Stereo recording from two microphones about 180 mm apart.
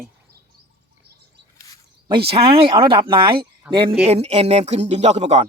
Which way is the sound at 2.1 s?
30° right (ahead or behind).